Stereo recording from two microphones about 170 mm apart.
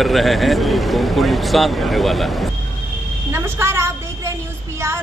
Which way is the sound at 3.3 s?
15° right (ahead or behind).